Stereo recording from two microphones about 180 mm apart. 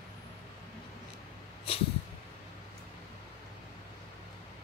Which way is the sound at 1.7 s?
30° left (ahead or behind).